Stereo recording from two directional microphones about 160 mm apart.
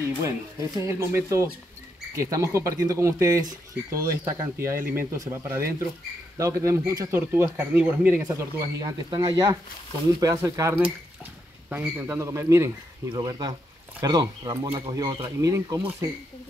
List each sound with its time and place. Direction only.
0.2 s speech: 20° right (ahead or behind)
4.7 s speech: 60° right (ahead or behind)
5.1 s speech: 20° right (ahead or behind)